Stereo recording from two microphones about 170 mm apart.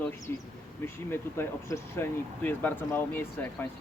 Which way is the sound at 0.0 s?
15° left (ahead or behind).